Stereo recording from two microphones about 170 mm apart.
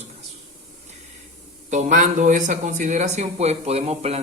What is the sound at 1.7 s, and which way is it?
Speech, 45° right (ahead or behind).